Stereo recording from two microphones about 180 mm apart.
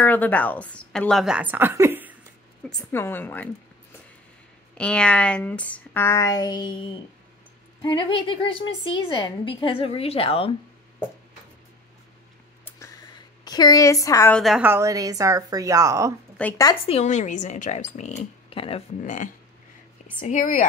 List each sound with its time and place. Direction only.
0.0 s a woman's voice: 10° left (ahead or behind); by 2.1 s 10° right (ahead or behind)
2.6 s speech: 10° left (ahead or behind)
4.7 s a woman's voice: 5° left (ahead or behind); by 10.5 s 30° left (ahead or behind)
12.6 s a sound: 15° left (ahead or behind)
13.4 s a woman's voice: 20° left (ahead or behind)
14.3 s a woman's voice: centre (ahead or behind)
14.6 s a woman's voice: 15° right (ahead or behind)
16.4 s speech: 5° left (ahead or behind)
16.8 s a woman's voice: 35° left (ahead or behind)